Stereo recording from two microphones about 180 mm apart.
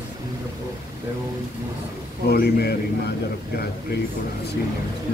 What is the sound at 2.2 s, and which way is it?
Speech, 60° left (ahead or behind).